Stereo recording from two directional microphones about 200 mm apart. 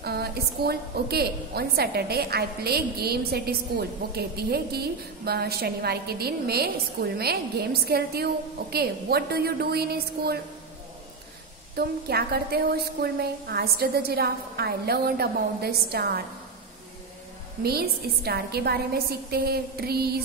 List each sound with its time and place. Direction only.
0.0 s a woman's voice: 55° right (ahead or behind)
11.7 s a woman's voice: 50° right (ahead or behind)
17.6 s a woman's voice: 50° right (ahead or behind)